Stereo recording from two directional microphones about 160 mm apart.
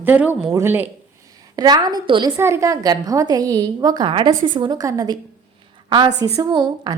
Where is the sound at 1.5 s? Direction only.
25° right (ahead or behind).